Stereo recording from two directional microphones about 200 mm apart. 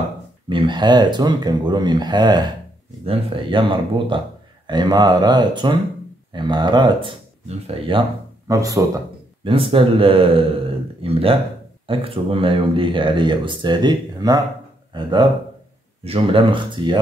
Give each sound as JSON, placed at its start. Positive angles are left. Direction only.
{"t": 0.5, "sound": "speech", "side_deg": -25}
{"t": 8.5, "sound": "speech", "side_deg": -15}
{"t": 9.4, "sound": "speech", "side_deg": -25}